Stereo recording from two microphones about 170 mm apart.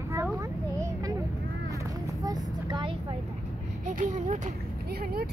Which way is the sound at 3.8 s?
50° right (ahead or behind).